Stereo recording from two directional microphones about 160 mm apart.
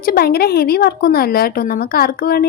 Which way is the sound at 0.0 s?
70° left (ahead or behind).